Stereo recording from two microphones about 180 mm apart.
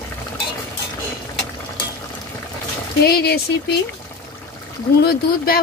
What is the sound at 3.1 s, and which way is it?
Speech, 60° left (ahead or behind).